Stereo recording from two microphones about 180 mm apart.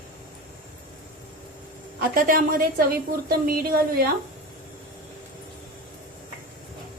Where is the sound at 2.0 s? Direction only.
50° right (ahead or behind).